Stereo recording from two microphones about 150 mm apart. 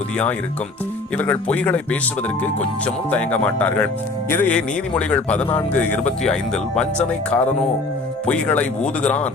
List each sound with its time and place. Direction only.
1.1 s a man's voice: 10° left (ahead or behind)